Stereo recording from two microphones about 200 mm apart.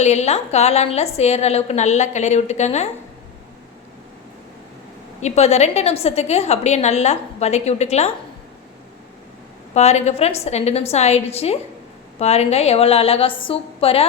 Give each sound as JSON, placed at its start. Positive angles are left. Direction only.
{"t": 0.0, "sound": "a woman's voice", "side_deg": 35}
{"t": 5.2, "sound": "a woman's voice", "side_deg": 35}
{"t": 9.7, "sound": "a woman's voice", "side_deg": 35}